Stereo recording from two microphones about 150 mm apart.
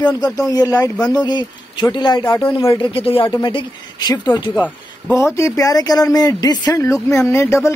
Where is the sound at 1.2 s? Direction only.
30° left (ahead or behind).